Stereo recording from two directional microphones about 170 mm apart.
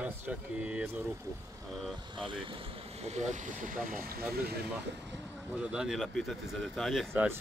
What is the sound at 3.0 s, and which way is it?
Speech, 45° right (ahead or behind).